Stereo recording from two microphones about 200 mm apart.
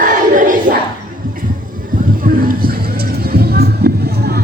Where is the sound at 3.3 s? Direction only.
50° right (ahead or behind).